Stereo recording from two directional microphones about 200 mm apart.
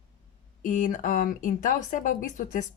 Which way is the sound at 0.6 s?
40° left (ahead or behind).